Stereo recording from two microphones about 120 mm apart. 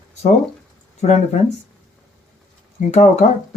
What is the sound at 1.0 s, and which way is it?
Speech, 70° left (ahead or behind).